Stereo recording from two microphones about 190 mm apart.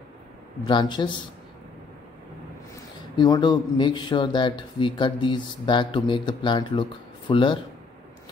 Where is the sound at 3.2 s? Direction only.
20° left (ahead or behind).